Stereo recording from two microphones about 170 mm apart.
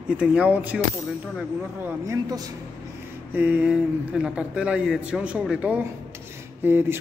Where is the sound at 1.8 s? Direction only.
20° right (ahead or behind).